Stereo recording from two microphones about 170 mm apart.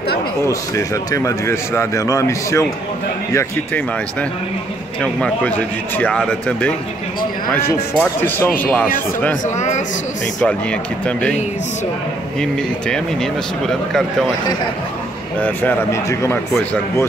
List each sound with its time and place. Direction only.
0.5 s a man's voice: 20° left (ahead or behind)
9.6 s speech: 45° left (ahead or behind)
10.4 s a man's voice: 5° left (ahead or behind)
12.4 s speech: 5° left (ahead or behind)
15.4 s a man's voice: 15° left (ahead or behind)